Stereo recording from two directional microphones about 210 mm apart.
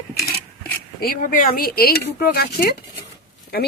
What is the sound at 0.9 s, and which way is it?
Speech, 45° left (ahead or behind).